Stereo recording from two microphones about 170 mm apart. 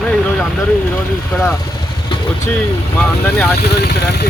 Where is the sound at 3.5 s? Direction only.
70° left (ahead or behind).